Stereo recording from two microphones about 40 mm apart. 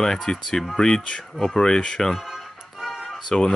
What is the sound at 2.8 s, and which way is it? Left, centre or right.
Music, centre.